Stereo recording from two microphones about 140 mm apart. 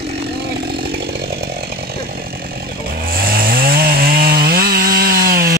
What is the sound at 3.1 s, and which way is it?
Chainsaw, 90° right.